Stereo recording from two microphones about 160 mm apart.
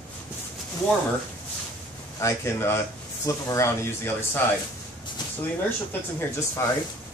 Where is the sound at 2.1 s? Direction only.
15° left (ahead or behind).